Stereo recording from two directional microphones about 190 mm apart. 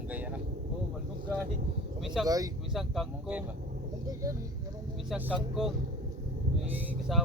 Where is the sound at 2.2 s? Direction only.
20° right (ahead or behind).